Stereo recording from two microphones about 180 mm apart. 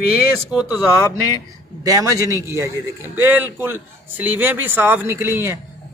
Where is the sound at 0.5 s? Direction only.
5° right (ahead or behind).